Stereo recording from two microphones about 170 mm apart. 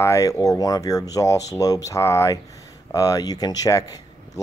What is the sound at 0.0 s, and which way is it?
Speech, 20° left (ahead or behind).